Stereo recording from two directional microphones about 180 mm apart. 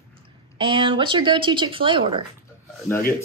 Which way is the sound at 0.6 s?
30° right (ahead or behind).